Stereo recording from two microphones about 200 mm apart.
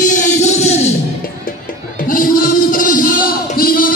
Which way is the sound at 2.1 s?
45° left (ahead or behind).